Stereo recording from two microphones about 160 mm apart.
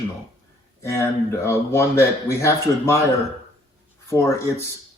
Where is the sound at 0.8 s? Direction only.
15° left (ahead or behind).